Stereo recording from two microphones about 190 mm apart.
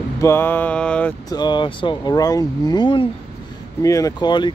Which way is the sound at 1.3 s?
20° left (ahead or behind).